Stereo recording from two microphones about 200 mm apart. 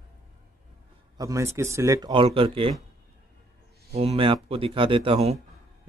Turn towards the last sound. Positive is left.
turn(degrees=-30)  # may be behind; listen again after turning